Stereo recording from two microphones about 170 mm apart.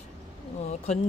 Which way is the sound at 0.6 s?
40° left (ahead or behind).